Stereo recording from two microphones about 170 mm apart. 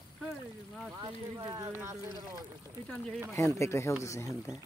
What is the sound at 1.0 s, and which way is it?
Speech, 25° right (ahead or behind).